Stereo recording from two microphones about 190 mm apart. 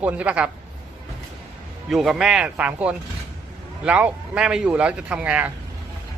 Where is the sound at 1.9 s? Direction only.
Centre (ahead or behind).